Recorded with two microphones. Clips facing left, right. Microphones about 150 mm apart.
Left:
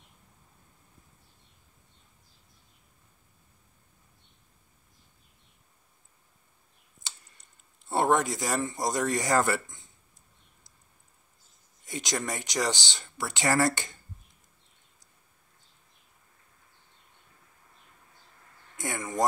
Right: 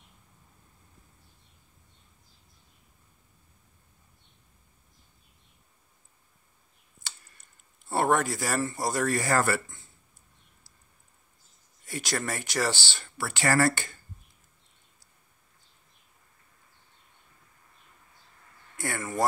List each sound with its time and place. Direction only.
7.0 s clicking: 20° left (ahead or behind)
7.8 s speech: 20° left (ahead or behind)
11.8 s speech: 20° left (ahead or behind)
18.8 s speech: 20° left (ahead or behind)